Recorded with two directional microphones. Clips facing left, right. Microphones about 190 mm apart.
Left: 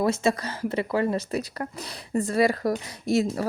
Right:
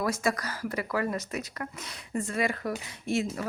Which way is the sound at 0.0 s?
25° left (ahead or behind).